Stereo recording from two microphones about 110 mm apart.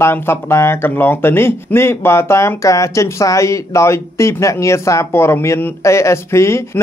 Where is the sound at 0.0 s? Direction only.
25° left (ahead or behind).